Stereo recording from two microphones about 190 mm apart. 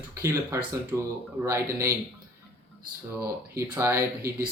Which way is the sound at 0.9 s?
15° right (ahead or behind).